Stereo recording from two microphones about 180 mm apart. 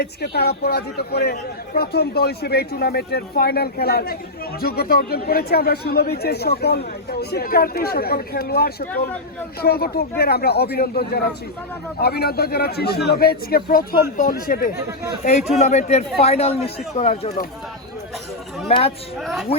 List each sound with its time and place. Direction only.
0.0 s a man's voice: 65° left (ahead or behind)
15.2 s speech: 40° left (ahead or behind)
18.7 s speech: 35° left (ahead or behind)
19.2 s speech: centre (ahead or behind)